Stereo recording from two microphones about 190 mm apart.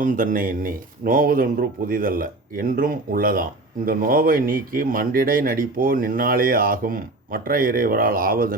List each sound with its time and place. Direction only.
0.0 s speech: 45° right (ahead or behind)